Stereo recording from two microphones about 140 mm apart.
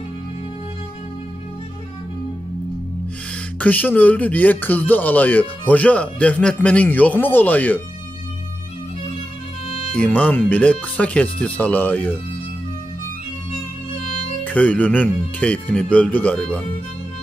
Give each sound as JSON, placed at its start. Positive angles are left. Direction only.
{"t": 3.5, "sound": "speech", "side_deg": 10}
{"t": 9.7, "sound": "music", "side_deg": 45}
{"t": 9.9, "sound": "speech", "side_deg": 10}
{"t": 14.4, "sound": "speech", "side_deg": 10}